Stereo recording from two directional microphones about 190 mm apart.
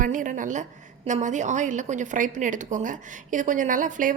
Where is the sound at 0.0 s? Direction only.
45° right (ahead or behind).